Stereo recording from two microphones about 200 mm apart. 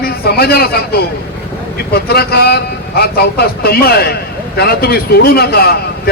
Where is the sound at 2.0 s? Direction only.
50° left (ahead or behind).